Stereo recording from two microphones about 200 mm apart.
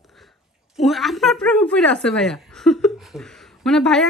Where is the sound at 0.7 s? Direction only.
Centre (ahead or behind).